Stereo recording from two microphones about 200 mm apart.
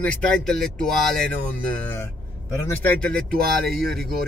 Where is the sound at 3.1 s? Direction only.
45° right (ahead or behind).